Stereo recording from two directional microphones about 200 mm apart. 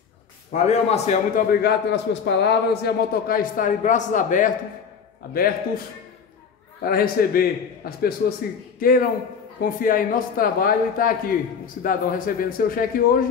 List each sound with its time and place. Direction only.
0.5 s a man's voice: 30° left (ahead or behind)
6.8 s a man's voice: 50° left (ahead or behind)